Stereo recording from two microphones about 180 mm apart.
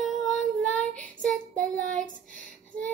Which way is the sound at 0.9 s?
5° left (ahead or behind).